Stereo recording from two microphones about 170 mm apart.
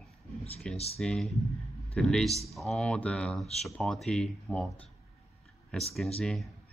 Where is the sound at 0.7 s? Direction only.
35° left (ahead or behind).